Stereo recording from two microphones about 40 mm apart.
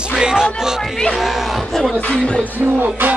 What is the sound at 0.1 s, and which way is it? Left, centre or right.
Music, centre.